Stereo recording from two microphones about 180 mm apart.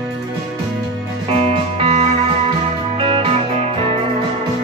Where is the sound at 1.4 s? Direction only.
35° right (ahead or behind).